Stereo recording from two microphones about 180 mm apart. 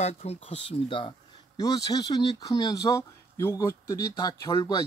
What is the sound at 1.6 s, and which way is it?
Speech, 20° left (ahead or behind).